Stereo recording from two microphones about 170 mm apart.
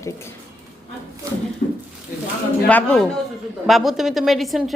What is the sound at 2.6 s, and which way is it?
A woman's voice, 5° left (ahead or behind).